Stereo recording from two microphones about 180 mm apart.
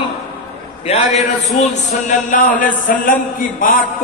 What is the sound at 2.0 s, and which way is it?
A man's voice, 50° left (ahead or behind).